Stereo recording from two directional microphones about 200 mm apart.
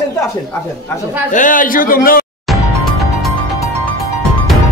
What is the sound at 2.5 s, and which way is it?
Music, centre (ahead or behind).